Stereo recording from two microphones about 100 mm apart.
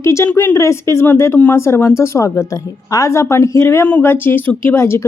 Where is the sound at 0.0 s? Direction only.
30° left (ahead or behind).